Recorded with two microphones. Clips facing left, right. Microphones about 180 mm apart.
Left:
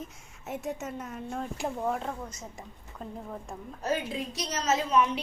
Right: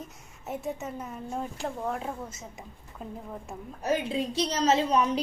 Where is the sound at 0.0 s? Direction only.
Centre (ahead or behind).